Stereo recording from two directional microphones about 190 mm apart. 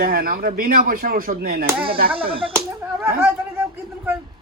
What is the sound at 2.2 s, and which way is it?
Speech, 30° right (ahead or behind).